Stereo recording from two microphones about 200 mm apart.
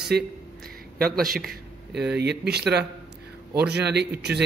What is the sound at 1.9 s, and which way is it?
Speech, 55° right (ahead or behind).